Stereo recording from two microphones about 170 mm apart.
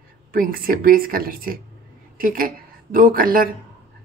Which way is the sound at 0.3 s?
55° right (ahead or behind).